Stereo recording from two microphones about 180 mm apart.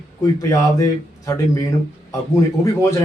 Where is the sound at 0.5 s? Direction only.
15° left (ahead or behind).